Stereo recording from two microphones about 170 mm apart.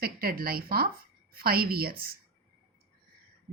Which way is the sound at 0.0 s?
60° right (ahead or behind).